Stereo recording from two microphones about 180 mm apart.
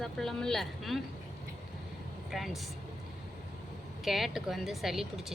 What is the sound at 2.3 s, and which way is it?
Speech, centre (ahead or behind).